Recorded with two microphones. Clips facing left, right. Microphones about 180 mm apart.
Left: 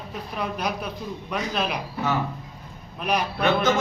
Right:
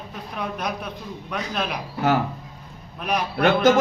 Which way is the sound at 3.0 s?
Centre (ahead or behind).